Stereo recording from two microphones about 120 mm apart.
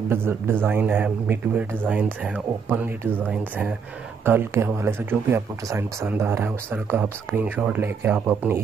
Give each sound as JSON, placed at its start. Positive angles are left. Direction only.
{"t": 0.1, "sound": "a man's voice", "side_deg": -20}